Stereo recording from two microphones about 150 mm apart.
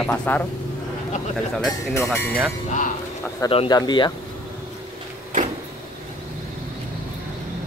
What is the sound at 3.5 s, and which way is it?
Speech, 40° left (ahead or behind).